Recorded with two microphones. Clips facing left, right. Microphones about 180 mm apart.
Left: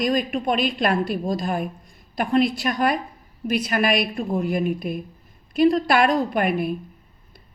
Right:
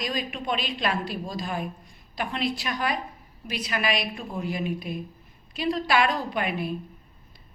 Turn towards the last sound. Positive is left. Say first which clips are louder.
# left 7 dB
turn(degrees=50)  # may be behind; listen again after turning